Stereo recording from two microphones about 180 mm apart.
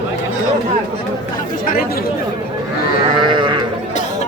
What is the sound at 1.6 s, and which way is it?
Chatter, 55° left (ahead or behind).